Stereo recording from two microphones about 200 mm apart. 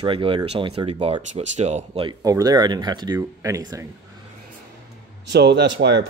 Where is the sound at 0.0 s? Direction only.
25° right (ahead or behind).